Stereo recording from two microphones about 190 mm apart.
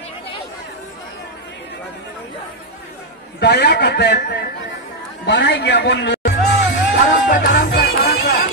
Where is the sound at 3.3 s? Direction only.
60° left (ahead or behind).